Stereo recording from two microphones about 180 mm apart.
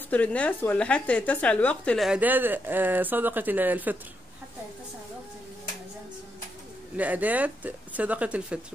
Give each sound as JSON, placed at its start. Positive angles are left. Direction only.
{"t": 0.1, "sound": "a woman's voice", "side_deg": 10}
{"t": 7.0, "sound": "speech", "side_deg": -10}